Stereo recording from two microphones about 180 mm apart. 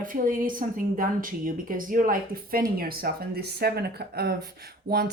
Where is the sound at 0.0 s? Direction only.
50° right (ahead or behind).